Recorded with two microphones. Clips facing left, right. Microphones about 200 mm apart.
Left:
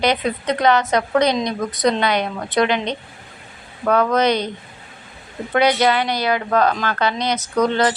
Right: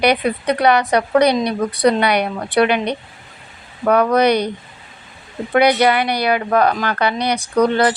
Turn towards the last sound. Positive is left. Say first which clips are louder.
# right 3 dB
turn(degrees=-10)  # may be behind; listen again after turning